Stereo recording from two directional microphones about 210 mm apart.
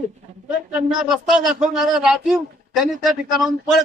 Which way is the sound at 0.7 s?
Centre (ahead or behind).